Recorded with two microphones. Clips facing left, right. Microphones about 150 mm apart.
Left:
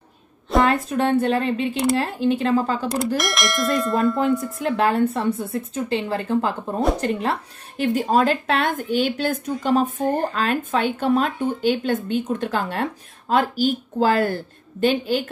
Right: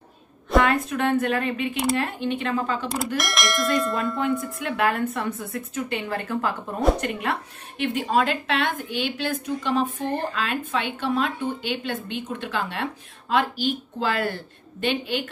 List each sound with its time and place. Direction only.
0.6 s a woman's voice: 35° left (ahead or behind)
3.2 s bell: centre (ahead or behind)
4.6 s a woman's voice: 30° left (ahead or behind)